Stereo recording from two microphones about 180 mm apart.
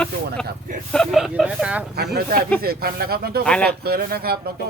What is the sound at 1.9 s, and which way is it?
Speech, 60° right (ahead or behind).